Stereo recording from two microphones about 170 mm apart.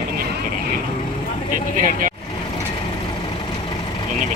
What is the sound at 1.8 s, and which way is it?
Vehicle, 50° right (ahead or behind).